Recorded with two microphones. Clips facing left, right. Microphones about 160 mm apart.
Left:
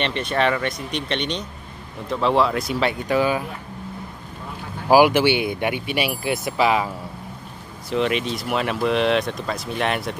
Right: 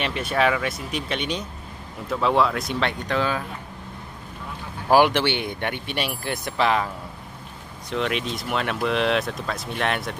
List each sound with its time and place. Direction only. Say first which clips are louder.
0.0 s speech: left 1 dB; 5° right (ahead or behind); by 3.4 s 10° left (ahead or behind)
4.8 s speech: left 3 dB; 10° left (ahead or behind)
7.9 s speech: left 4 dB; centre (ahead or behind)